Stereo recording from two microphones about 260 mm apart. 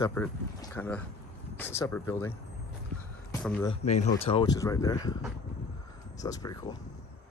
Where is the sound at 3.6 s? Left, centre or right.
Left.